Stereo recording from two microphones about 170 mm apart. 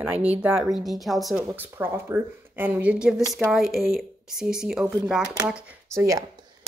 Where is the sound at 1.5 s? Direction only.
10° right (ahead or behind).